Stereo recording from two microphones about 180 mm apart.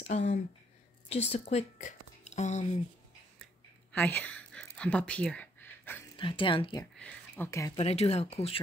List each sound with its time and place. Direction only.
0.1 s speech: 40° left (ahead or behind)
3.9 s a sound: 10° left (ahead or behind)
6.1 s speech: 30° left (ahead or behind)
7.0 s speech: 10° left (ahead or behind)
7.7 s speech: 35° left (ahead or behind)